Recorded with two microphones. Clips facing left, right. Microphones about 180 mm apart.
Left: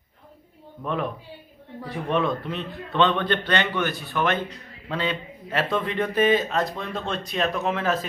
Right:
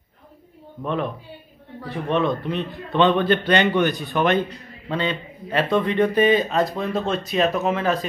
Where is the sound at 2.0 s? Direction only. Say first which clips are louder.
Right 3 dB; 5° left (ahead or behind); by 4.4 s 20° right (ahead or behind).